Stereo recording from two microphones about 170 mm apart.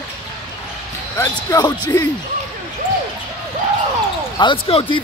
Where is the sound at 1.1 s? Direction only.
20° left (ahead or behind).